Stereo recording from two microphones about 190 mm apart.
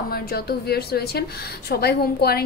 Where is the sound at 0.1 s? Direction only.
55° left (ahead or behind).